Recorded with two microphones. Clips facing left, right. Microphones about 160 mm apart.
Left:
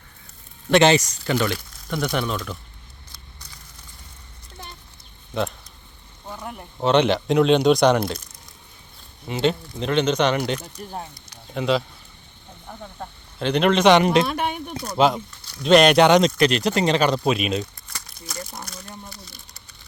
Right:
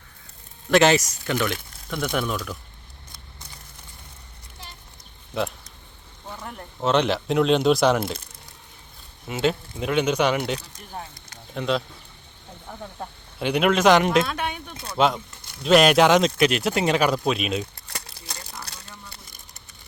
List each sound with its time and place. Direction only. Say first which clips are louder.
0.7 s speech: left 1 dB; centre (ahead or behind)
5.3 s speech: left 1 dB; centre (ahead or behind)
9.2 s speech: left 2 dB; 5° right (ahead or behind)
10.8 s speech: left 8 dB; 40° left (ahead or behind)
11.5 s speech: left 3 dB; centre (ahead or behind)
13.4 s speech: left 2 dB; 5° right (ahead or behind)
14.4 s speech: left 4 dB; 55° left (ahead or behind)
14.9 s speech: left 2 dB; centre (ahead or behind)
17.8 s crumpling: right 3 dB; 65° right (ahead or behind)